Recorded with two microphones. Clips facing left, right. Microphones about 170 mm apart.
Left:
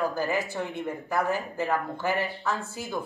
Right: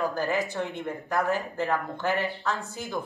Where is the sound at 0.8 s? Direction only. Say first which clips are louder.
Left 1 dB; centre (ahead or behind).